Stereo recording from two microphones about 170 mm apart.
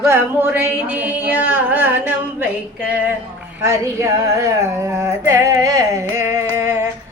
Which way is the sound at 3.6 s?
15° right (ahead or behind).